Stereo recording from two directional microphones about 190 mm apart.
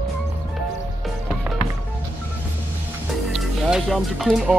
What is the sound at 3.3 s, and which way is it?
Speech, centre (ahead or behind).